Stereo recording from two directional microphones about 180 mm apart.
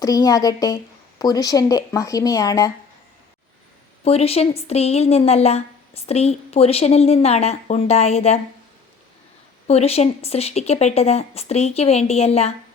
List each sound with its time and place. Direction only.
0.0 s speech: 20° left (ahead or behind)
4.0 s a woman's voice: 35° left (ahead or behind)
9.6 s a woman's voice: 35° left (ahead or behind)